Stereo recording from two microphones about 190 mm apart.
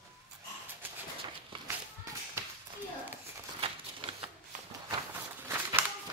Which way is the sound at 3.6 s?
30° right (ahead or behind).